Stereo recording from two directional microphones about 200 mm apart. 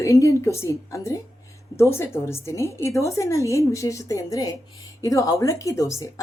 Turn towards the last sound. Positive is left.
turn(degrees=15)  # may be behind; listen again after turning